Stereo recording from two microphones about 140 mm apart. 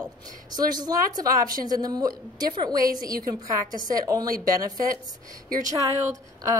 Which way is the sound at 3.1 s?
90° right.